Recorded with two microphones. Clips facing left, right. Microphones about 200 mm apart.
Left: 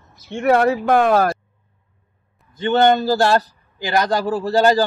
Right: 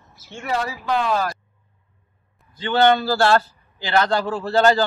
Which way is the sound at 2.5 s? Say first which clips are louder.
Left 2 dB; 20° left (ahead or behind).